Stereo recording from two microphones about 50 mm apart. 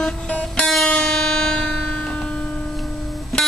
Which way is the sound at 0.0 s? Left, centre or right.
Centre.